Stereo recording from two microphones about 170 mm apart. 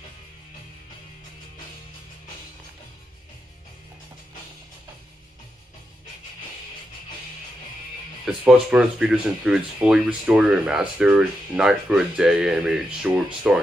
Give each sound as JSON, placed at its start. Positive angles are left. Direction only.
{"t": 8.3, "sound": "speech", "side_deg": -5}